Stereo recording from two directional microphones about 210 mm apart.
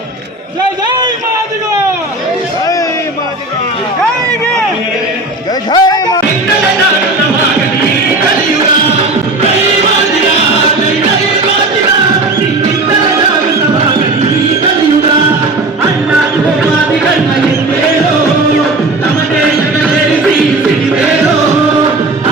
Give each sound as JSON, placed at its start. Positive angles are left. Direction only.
{"t": 5.7, "sound": "music", "side_deg": 20}